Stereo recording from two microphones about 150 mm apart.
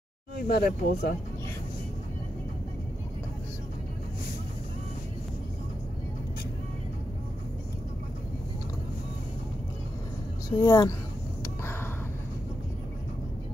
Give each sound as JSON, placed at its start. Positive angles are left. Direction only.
{"t": 0.5, "sound": "speech", "side_deg": 90}
{"t": 10.5, "sound": "speech", "side_deg": 25}